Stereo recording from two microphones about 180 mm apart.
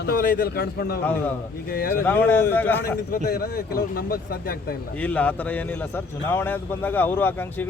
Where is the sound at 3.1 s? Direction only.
60° left (ahead or behind).